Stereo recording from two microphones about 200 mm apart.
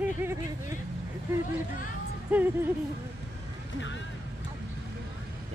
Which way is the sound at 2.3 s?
5° right (ahead or behind).